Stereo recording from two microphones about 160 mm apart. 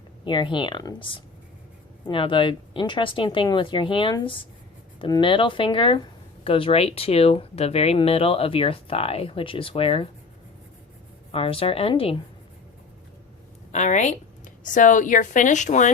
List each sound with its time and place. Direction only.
0.3 s speech: 30° left (ahead or behind)
11.3 s speech: 35° left (ahead or behind)
13.7 s a woman's voice: 50° left (ahead or behind)